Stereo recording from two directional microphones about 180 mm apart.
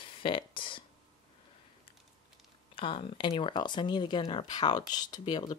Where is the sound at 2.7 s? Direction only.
30° left (ahead or behind).